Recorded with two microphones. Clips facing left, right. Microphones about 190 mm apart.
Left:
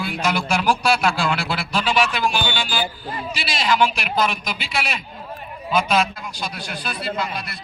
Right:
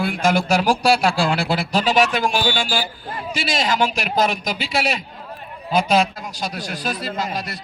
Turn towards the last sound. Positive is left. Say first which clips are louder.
# right 1 dB
turn(degrees=-40)  # may be behind; listen again after turning